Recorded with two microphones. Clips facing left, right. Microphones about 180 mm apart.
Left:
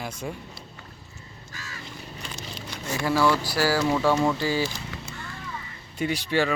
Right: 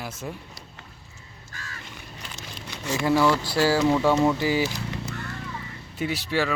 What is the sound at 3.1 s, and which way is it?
Speech, 20° right (ahead or behind).